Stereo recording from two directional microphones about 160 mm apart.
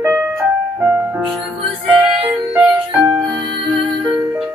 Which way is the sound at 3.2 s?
30° right (ahead or behind).